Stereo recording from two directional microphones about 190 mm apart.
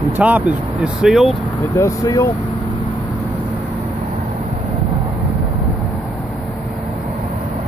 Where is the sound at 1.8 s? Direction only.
15° left (ahead or behind).